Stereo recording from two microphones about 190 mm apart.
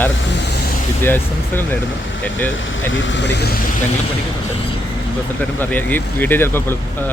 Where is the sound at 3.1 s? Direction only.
65° left (ahead or behind).